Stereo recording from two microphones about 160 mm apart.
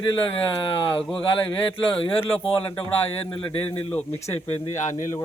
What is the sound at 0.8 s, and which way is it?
Speech, 35° left (ahead or behind).